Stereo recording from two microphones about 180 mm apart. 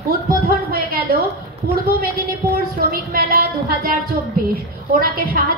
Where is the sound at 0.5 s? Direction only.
55° right (ahead or behind).